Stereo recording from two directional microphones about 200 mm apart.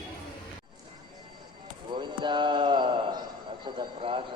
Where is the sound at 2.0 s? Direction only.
25° right (ahead or behind).